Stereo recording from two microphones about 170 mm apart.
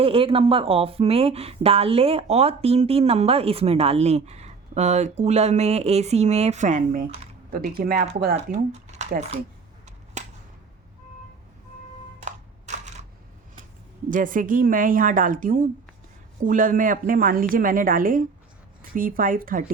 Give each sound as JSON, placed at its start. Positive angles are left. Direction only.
{"t": 0.0, "sound": "a woman's voice", "side_deg": -35}
{"t": 8.5, "sound": "speech", "side_deg": -45}
{"t": 10.2, "sound": "a sound", "side_deg": -45}
{"t": 12.2, "sound": "crushing", "side_deg": -45}
{"t": 14.1, "sound": "a woman's voice", "side_deg": -50}